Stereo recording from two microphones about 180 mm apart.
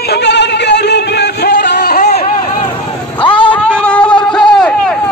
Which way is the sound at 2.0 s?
40° left (ahead or behind).